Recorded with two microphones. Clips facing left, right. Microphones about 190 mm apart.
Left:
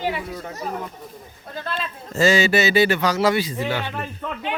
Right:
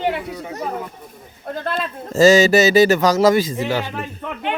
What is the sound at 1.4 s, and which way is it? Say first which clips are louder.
A man's voice: right 6 dB; 55° right (ahead or behind).